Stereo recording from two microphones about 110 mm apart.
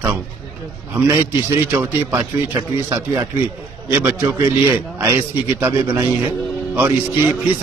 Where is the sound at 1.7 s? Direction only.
20° right (ahead or behind).